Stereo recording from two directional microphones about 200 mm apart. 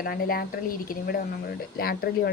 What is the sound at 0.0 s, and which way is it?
A woman's voice, 50° left (ahead or behind).